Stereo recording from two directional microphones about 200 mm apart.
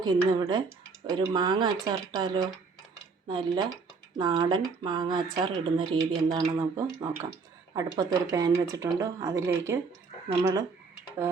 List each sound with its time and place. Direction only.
0.0 s speech: 20° right (ahead or behind)